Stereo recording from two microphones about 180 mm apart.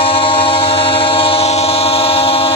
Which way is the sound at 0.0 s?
30° left (ahead or behind).